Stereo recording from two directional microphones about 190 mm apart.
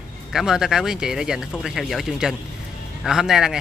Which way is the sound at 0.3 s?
Centre (ahead or behind).